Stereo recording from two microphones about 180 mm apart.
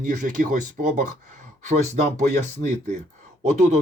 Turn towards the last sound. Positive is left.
turn(degrees=-40)  # may be behind; listen again after turning